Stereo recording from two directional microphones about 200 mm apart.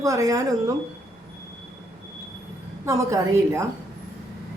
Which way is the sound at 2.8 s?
15° right (ahead or behind).